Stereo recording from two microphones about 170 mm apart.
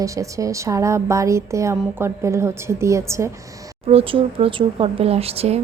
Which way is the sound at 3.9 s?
35° right (ahead or behind).